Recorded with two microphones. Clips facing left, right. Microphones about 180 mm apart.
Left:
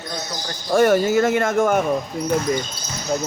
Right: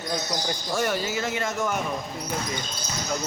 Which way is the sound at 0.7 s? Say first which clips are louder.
Left 12 dB; 50° left (ahead or behind).